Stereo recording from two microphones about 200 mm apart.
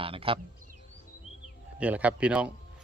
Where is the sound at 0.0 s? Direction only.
25° right (ahead or behind).